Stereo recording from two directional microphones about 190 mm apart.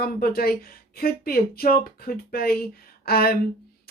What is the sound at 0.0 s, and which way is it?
A woman's voice, 50° left (ahead or behind).